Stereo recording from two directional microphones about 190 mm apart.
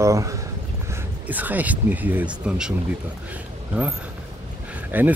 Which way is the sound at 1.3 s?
10° right (ahead or behind).